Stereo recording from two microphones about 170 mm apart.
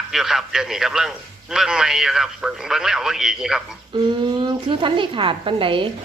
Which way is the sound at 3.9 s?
25° right (ahead or behind).